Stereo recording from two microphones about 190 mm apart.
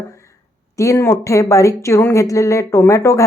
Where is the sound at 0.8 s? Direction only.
15° left (ahead or behind).